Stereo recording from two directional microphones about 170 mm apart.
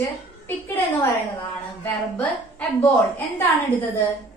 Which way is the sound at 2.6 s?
10° left (ahead or behind).